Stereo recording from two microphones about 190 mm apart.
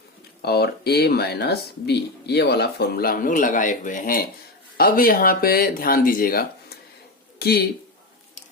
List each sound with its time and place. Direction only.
0.4 s speech: 55° left (ahead or behind)